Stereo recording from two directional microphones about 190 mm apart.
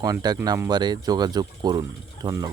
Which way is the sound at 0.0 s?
20° right (ahead or behind).